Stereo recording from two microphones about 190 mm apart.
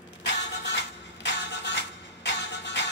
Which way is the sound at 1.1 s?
70° left (ahead or behind).